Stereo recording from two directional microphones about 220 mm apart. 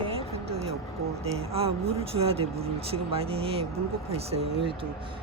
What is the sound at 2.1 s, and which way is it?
Speech, 25° right (ahead or behind).